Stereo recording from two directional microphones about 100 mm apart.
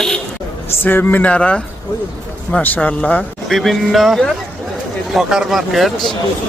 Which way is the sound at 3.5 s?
Centre (ahead or behind).